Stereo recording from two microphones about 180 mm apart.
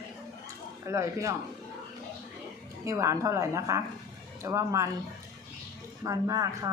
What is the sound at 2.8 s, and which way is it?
A man's voice, 15° right (ahead or behind).